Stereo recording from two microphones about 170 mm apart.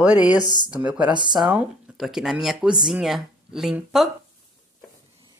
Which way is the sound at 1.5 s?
5° right (ahead or behind).